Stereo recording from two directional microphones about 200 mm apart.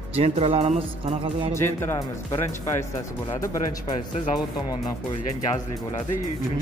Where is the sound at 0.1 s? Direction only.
30° right (ahead or behind).